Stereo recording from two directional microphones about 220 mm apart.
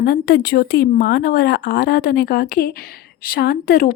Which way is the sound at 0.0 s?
45° left (ahead or behind).